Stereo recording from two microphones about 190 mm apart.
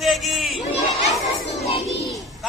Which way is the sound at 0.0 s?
Centre (ahead or behind).